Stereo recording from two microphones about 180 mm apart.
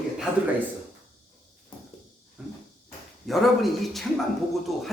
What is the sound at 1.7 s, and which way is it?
Walk, 25° left (ahead or behind).